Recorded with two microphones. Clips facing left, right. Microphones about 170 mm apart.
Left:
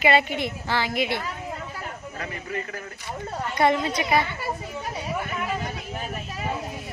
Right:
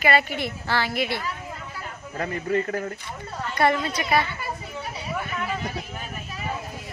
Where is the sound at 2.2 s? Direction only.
40° right (ahead or behind).